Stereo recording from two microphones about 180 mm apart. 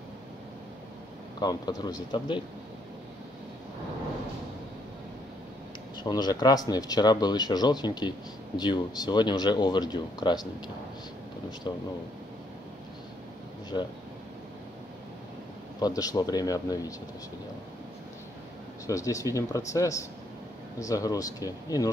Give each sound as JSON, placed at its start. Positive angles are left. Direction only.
{"t": 1.4, "sound": "speech", "side_deg": 20}
{"t": 6.0, "sound": "speech", "side_deg": 25}
{"t": 15.8, "sound": "speech", "side_deg": 20}
{"t": 18.9, "sound": "speech", "side_deg": 20}